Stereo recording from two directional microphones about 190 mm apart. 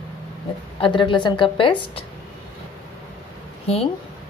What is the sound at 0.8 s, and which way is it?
A woman's voice, 25° left (ahead or behind).